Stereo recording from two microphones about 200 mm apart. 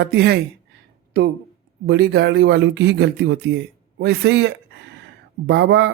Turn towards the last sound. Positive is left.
turn(degrees=-60)  # may be behind; listen again after turning